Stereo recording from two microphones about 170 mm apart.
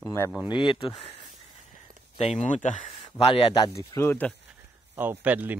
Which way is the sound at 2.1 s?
40° left (ahead or behind).